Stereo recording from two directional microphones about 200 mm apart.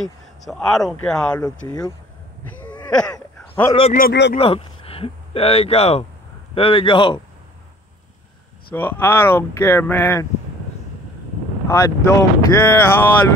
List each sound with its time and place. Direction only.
0.0 s speech: centre (ahead or behind)
2.9 s a sound: 5° left (ahead or behind)
3.9 s a man's voice: 50° left (ahead or behind)
4.4 s speech: 30° left (ahead or behind)
8.7 s speech: 10° left (ahead or behind)
11.6 s speech: 15° left (ahead or behind)